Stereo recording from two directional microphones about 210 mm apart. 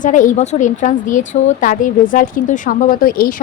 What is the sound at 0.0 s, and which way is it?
A woman's voice, 40° left (ahead or behind).